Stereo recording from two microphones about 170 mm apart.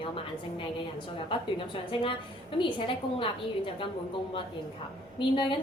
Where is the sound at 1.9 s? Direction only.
30° left (ahead or behind).